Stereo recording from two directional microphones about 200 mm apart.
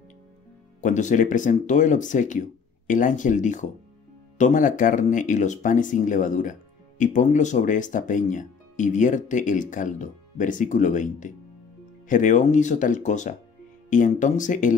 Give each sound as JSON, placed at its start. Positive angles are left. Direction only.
{"t": 0.7, "sound": "speech", "side_deg": 40}